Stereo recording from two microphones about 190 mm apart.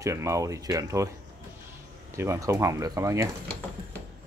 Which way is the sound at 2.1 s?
15° right (ahead or behind).